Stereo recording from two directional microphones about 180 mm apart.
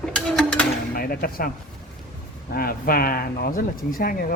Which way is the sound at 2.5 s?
55° left (ahead or behind).